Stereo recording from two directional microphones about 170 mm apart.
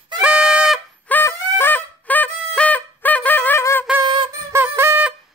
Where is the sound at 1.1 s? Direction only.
15° left (ahead or behind).